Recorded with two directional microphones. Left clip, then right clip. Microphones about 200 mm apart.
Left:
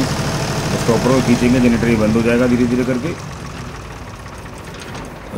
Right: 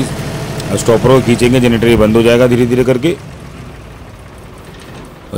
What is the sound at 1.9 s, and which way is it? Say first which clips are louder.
Speech: right 7 dB; 50° right (ahead or behind).